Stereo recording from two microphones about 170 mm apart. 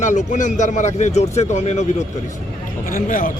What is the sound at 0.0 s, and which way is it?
Speech, 45° left (ahead or behind).